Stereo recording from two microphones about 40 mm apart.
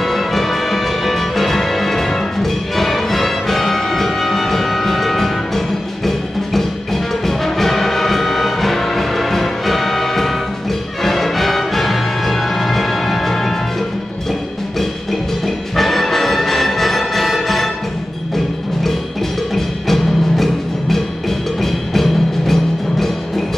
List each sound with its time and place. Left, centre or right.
0.0 s music: centre
15.4 s music: centre
19.5 s music: centre